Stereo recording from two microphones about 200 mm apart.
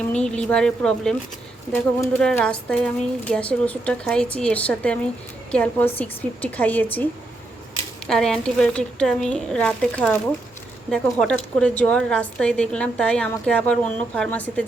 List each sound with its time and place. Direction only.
0.1 s a woman's voice: 5° left (ahead or behind)